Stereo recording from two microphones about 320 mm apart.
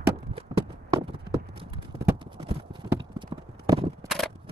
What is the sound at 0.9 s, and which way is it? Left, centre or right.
Clip-clop, centre.